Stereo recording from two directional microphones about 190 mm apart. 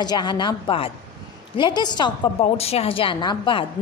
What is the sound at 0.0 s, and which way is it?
A woman's voice, 20° left (ahead or behind).